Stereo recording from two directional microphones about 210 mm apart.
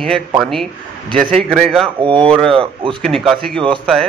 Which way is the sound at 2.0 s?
25° right (ahead or behind).